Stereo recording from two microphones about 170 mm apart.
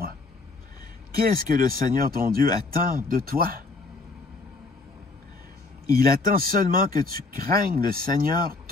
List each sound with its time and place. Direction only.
1.1 s speech: 60° right (ahead or behind)
5.9 s speech: 60° right (ahead or behind)